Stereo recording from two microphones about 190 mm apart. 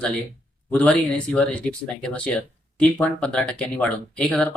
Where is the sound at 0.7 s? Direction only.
5° left (ahead or behind).